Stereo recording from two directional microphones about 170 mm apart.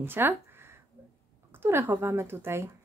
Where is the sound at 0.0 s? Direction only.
15° right (ahead or behind).